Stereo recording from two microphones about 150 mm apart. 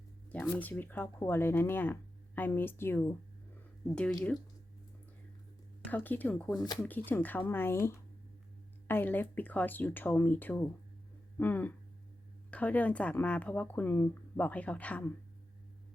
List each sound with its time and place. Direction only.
0.3 s speech: 10° left (ahead or behind)
5.8 s speech: 10° left (ahead or behind)